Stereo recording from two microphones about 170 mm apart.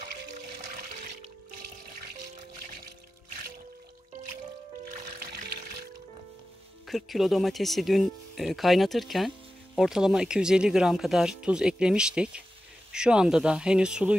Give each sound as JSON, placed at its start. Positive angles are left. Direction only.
{"t": 2.3, "sound": "music", "side_deg": -55}
{"t": 6.9, "sound": "speech", "side_deg": 0}